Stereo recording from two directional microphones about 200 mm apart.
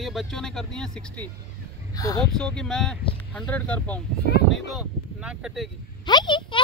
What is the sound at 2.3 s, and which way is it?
Speech, 5° left (ahead or behind).